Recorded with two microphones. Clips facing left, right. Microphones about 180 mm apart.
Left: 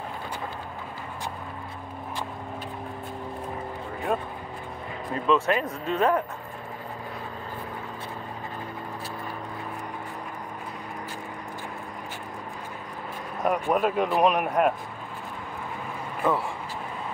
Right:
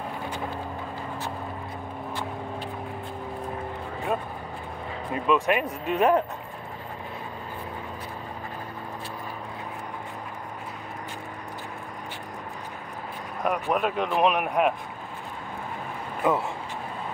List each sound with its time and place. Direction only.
5.1 s speech: 15° right (ahead or behind)
13.4 s speech: centre (ahead or behind)
14.2 s speech: 5° right (ahead or behind)